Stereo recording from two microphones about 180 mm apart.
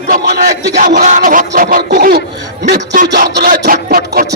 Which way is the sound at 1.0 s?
45° right (ahead or behind).